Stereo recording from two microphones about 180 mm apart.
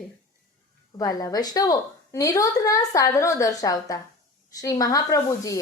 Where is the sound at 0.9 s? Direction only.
20° left (ahead or behind).